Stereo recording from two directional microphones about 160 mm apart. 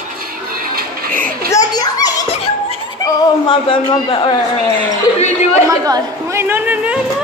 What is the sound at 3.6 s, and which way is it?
Speech, 35° left (ahead or behind).